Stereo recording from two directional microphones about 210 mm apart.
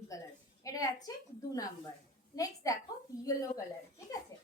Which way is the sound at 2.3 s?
15° left (ahead or behind).